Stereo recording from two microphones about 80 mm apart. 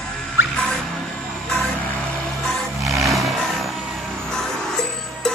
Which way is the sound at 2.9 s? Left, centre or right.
Right.